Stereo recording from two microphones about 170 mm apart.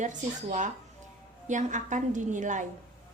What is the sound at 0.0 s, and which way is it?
A woman's voice, 45° right (ahead or behind).